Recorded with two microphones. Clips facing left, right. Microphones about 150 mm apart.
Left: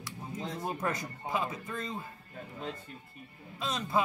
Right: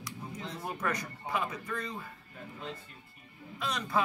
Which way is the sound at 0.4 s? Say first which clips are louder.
Left 3 dB; 20° left (ahead or behind).